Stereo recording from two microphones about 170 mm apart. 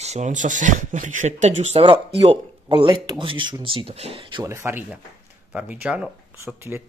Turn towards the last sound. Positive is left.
turn(degrees=-10)  # may be behind; listen again after turning